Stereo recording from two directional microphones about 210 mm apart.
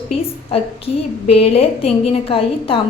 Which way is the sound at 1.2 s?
30° left (ahead or behind).